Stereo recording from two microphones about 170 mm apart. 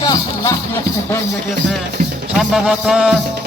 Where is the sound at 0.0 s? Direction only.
20° left (ahead or behind).